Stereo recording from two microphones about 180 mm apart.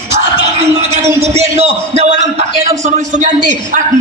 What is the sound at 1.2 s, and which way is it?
A man's voice, 35° right (ahead or behind).